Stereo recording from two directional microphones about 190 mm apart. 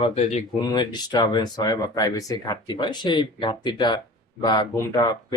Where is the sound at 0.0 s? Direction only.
35° left (ahead or behind).